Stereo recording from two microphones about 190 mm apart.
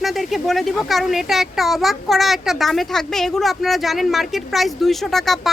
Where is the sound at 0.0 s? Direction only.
Centre (ahead or behind).